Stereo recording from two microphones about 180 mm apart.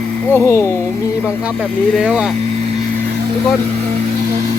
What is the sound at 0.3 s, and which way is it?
Speech, 15° left (ahead or behind).